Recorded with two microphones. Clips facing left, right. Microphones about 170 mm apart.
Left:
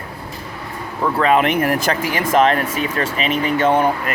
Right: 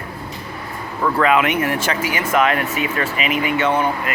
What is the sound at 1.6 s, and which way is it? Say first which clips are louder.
Speech: left 2 dB; 40° left (ahead or behind).